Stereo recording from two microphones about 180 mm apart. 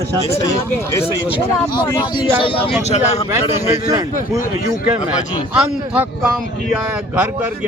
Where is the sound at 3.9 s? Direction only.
20° right (ahead or behind).